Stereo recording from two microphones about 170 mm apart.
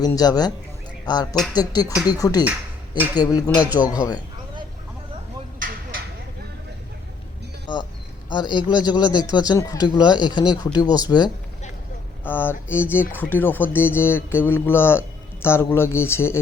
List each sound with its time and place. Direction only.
0.0 s speech: 25° left (ahead or behind)
5.5 s a sound: 55° right (ahead or behind)
8.3 s speech: 25° left (ahead or behind)
12.2 s speech: 10° left (ahead or behind)